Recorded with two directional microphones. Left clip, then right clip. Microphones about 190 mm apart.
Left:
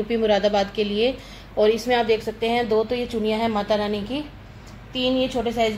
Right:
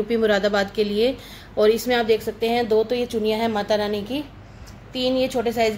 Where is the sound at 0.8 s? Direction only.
50° right (ahead or behind).